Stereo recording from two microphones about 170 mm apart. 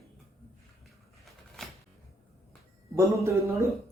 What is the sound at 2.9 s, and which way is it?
Speech, 15° right (ahead or behind).